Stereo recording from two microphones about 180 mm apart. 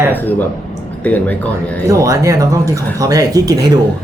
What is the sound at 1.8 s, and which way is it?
Speech, 20° right (ahead or behind).